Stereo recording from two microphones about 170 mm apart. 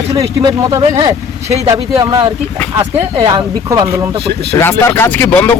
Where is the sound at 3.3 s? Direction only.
20° right (ahead or behind).